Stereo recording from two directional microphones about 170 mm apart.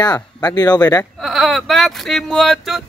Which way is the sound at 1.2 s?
Centre (ahead or behind).